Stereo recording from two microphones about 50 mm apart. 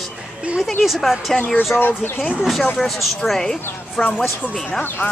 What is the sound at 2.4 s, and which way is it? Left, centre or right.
Speech, centre.